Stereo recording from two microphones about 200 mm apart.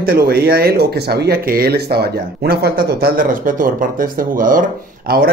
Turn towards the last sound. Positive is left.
turn(degrees=-50)  # may be behind; listen again after turning